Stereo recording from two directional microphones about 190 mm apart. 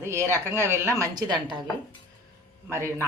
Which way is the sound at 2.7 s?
15° right (ahead or behind).